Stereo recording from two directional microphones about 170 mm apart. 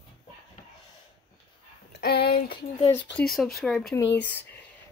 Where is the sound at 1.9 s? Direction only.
75° left (ahead or behind).